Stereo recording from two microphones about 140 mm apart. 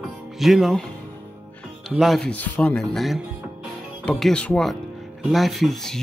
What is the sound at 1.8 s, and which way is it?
Speech, centre (ahead or behind).